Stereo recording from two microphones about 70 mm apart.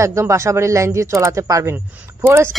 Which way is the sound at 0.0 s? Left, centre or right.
Right.